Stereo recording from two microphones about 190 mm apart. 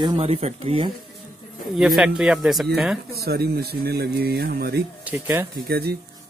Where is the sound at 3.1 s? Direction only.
55° right (ahead or behind).